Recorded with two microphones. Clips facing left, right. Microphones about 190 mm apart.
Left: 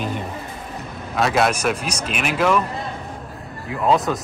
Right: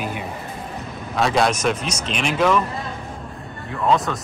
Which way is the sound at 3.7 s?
5° left (ahead or behind).